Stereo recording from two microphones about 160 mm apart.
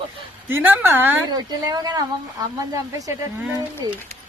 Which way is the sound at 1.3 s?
25° right (ahead or behind).